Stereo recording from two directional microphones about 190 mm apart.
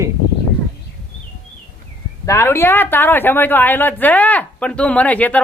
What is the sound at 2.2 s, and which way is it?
Speech, 15° left (ahead or behind).